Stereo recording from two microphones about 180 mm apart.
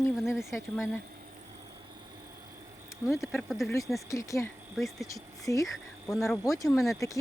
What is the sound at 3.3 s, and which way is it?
Speech, centre (ahead or behind).